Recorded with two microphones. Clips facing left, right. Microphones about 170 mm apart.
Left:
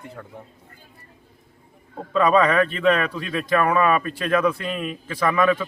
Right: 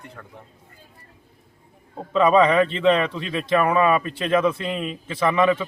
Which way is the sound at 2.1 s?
20° right (ahead or behind).